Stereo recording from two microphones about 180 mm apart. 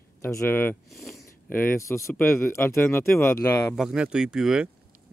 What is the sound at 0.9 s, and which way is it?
Speech, centre (ahead or behind).